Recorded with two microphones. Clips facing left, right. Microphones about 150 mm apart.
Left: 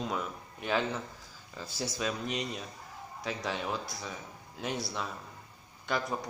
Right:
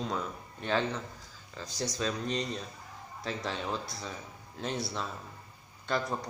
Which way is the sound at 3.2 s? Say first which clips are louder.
Even; centre (ahead or behind).